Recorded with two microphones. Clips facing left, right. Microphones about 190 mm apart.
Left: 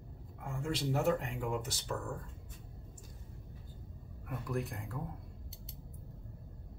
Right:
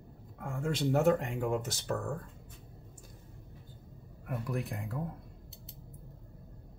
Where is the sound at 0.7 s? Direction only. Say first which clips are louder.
Right 5 dB; 50° right (ahead or behind).